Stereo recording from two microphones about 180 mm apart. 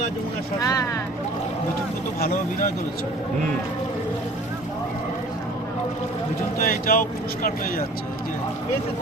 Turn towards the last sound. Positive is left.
turn(degrees=50)  # may be behind; listen again after turning